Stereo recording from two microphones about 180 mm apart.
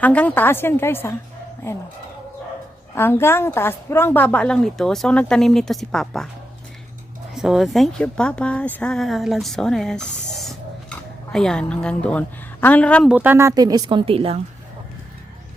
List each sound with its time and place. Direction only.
0.0 s a woman's voice: 10° left (ahead or behind)
2.9 s a woman's voice: 15° left (ahead or behind)
7.3 s a woman's voice: centre (ahead or behind)
10.3 s a sound: centre (ahead or behind)
13.1 s a woman's voice: 10° right (ahead or behind); by 14.4 s 30° right (ahead or behind)